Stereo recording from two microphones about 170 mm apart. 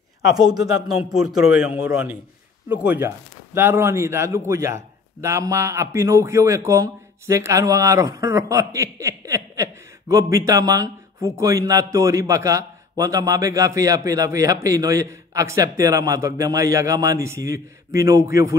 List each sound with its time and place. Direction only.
1.1 s a man's voice: 5° right (ahead or behind)
2.7 s a man's voice: 10° right (ahead or behind)